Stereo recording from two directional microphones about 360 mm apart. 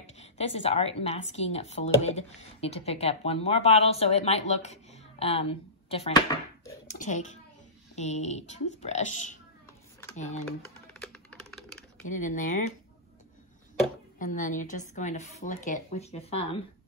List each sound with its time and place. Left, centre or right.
0.0 s a woman's voice: centre
11.0 s music: centre
12.1 s a woman's voice: left
14.1 s a woman's voice: left